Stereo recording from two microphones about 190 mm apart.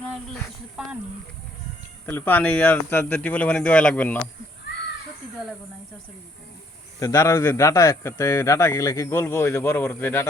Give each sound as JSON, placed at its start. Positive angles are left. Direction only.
{"t": 0.8, "sound": "speech", "side_deg": -5}
{"t": 2.0, "sound": "speech", "side_deg": 10}
{"t": 7.0, "sound": "speech", "side_deg": 15}